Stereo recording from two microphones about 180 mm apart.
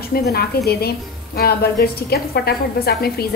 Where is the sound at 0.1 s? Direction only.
60° left (ahead or behind).